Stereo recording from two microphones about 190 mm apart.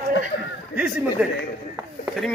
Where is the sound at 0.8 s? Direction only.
5° right (ahead or behind).